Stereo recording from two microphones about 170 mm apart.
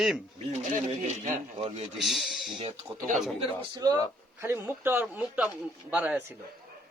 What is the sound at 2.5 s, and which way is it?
A man's voice, 35° right (ahead or behind).